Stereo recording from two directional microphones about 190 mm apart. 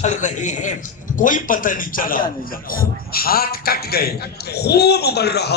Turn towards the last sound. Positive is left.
turn(degrees=60)  # may be behind; listen again after turning